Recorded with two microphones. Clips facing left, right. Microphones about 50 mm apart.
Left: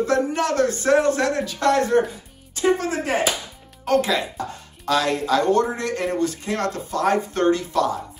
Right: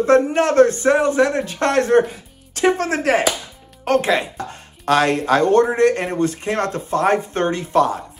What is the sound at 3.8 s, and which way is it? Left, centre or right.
Speech, right.